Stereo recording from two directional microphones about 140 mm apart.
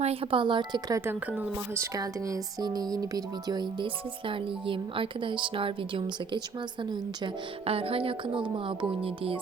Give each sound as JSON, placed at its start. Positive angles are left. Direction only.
{"t": 0.0, "sound": "speech", "side_deg": -45}
{"t": 7.6, "sound": "speech", "side_deg": -45}